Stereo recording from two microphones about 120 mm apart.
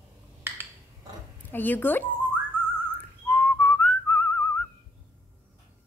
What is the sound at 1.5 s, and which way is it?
Speech, 15° left (ahead or behind).